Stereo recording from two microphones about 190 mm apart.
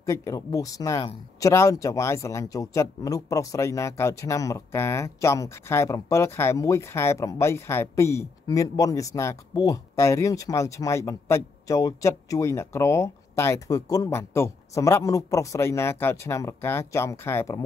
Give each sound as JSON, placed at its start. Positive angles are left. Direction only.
{"t": 0.0, "sound": "speech", "side_deg": 15}